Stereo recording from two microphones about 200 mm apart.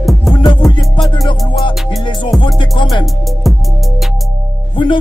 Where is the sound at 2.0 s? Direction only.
25° left (ahead or behind).